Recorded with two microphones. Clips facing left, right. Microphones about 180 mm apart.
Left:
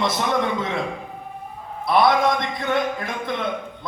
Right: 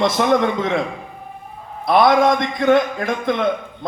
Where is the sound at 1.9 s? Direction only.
50° right (ahead or behind).